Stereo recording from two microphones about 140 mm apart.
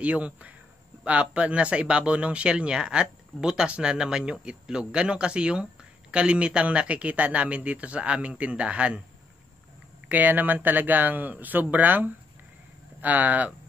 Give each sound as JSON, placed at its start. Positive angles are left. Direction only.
{"t": 0.0, "sound": "speech", "side_deg": -10}
{"t": 10.0, "sound": "speech", "side_deg": -10}